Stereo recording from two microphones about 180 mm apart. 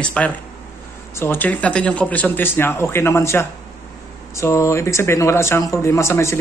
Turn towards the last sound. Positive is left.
turn(degrees=15)  # may be behind; listen again after turning